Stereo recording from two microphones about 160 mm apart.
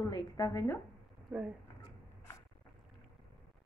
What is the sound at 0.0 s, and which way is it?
Speech, 25° left (ahead or behind).